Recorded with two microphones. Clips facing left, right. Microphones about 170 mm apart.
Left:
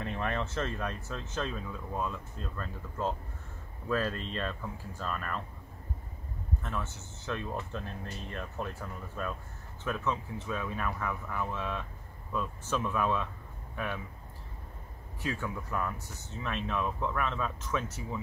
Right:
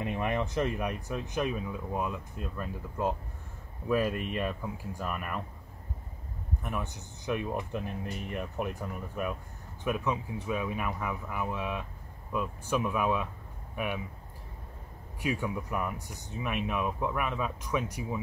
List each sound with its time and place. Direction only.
0.0 s speech: 15° right (ahead or behind)
6.6 s speech: 15° right (ahead or behind)
15.2 s speech: 15° right (ahead or behind)